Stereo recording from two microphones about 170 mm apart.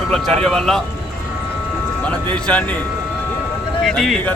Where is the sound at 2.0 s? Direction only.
5° left (ahead or behind).